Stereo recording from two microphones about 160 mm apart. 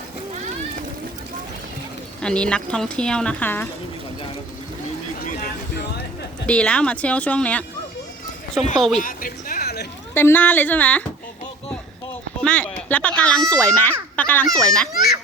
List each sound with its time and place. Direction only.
2.2 s speech: 5° left (ahead or behind)
6.4 s a child's voice: 5° left (ahead or behind)
8.7 s speech: centre (ahead or behind)
9.0 s a sound: 60° left (ahead or behind); by 9.8 s 75° left (ahead or behind)
10.2 s a child's voice: 15° left (ahead or behind)
12.4 s a child's voice: 10° left (ahead or behind)